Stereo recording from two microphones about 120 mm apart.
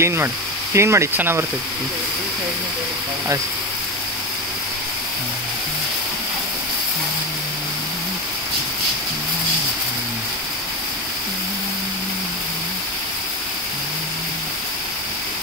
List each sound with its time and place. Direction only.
0.0 s speech: 20° right (ahead or behind)